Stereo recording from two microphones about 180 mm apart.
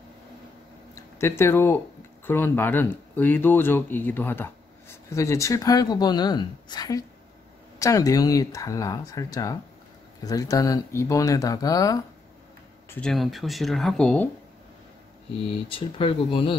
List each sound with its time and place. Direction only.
0.9 s a woman's voice: 15° left (ahead or behind)
12.9 s speech: 5° left (ahead or behind)
15.3 s a woman's voice: 30° left (ahead or behind)